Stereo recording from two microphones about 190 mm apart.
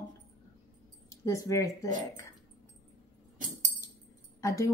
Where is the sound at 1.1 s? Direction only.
15° left (ahead or behind).